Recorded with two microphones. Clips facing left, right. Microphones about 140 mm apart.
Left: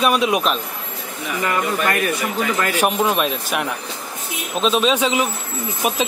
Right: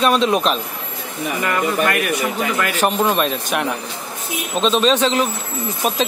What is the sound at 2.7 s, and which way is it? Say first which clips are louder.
Speech: right 1 dB; 10° left (ahead or behind).